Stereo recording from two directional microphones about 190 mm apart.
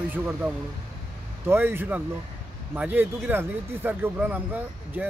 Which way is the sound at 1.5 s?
10° right (ahead or behind).